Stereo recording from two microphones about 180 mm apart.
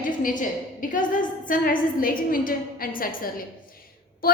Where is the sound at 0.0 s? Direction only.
50° left (ahead or behind).